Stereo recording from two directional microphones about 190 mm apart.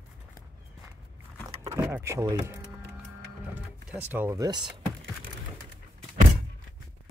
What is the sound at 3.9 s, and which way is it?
Speech, 10° right (ahead or behind).